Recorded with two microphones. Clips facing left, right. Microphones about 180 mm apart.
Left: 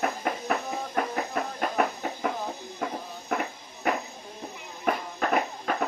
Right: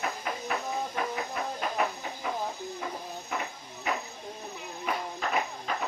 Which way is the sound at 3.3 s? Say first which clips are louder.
Left 6 dB; 55° left (ahead or behind).